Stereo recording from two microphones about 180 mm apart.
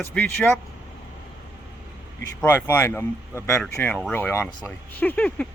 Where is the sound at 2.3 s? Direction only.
10° left (ahead or behind).